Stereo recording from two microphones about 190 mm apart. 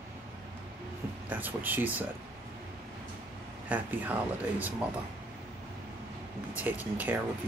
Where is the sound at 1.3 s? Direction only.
10° right (ahead or behind).